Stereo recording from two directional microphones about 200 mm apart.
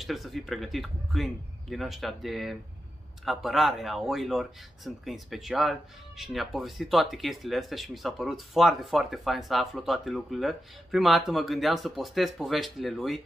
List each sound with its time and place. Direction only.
0.0 s speech: centre (ahead or behind)